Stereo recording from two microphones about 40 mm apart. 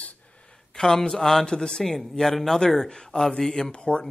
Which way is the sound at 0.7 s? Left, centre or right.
Centre.